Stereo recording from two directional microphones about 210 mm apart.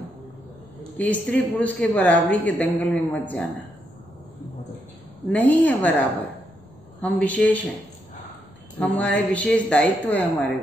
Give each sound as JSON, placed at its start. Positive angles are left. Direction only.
{"t": 0.9, "sound": "speech", "side_deg": 5}
{"t": 5.3, "sound": "speech", "side_deg": 5}
{"t": 7.0, "sound": "speech", "side_deg": 5}
{"t": 8.7, "sound": "speech", "side_deg": 5}